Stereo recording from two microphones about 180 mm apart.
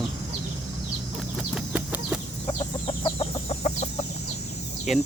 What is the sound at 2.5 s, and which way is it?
Chicken, 30° left (ahead or behind).